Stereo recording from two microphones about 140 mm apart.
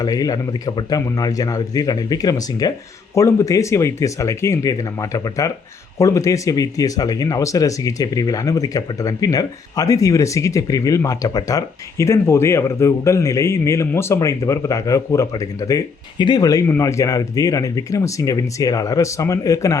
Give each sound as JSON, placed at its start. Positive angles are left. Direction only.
{"t": 0.0, "sound": "speech", "side_deg": 25}